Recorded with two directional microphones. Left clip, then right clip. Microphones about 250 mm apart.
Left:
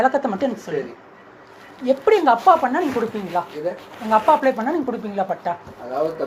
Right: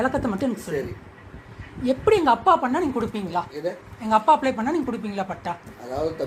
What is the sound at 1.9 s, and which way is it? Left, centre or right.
A woman's voice, right.